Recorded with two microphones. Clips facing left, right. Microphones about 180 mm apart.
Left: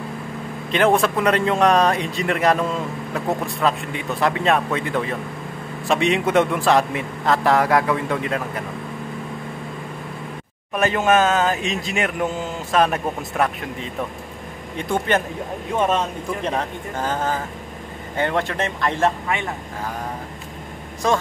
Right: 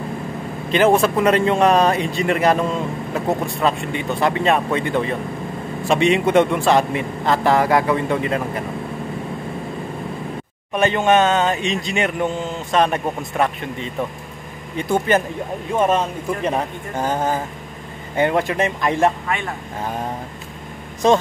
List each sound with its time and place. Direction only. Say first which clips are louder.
0.7 s speech: right 2 dB; centre (ahead or behind)
10.7 s speech: right 2 dB; centre (ahead or behind); by 19.1 s 15° right (ahead or behind)
21.0 s speech: right 5 dB; 20° right (ahead or behind)